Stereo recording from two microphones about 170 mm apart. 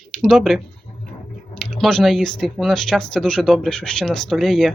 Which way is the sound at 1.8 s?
Centre (ahead or behind).